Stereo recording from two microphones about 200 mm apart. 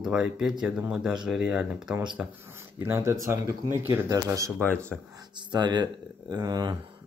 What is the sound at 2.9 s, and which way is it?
Speech, 15° right (ahead or behind).